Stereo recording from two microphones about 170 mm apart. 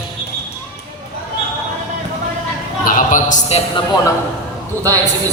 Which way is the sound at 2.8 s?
50° left (ahead or behind).